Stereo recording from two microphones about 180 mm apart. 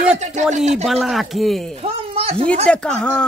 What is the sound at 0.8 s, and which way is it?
Speech, centre (ahead or behind).